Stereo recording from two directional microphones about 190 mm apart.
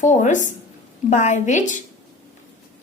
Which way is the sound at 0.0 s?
40° left (ahead or behind).